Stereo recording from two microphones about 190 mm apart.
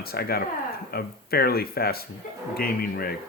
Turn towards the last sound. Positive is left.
turn(degrees=50)  # may be behind; listen again after turning